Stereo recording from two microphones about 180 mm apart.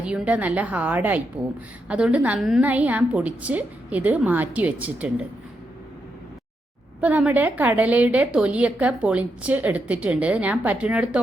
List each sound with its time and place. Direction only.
0.0 s a woman's voice: 5° right (ahead or behind)
7.0 s a woman's voice: 10° right (ahead or behind)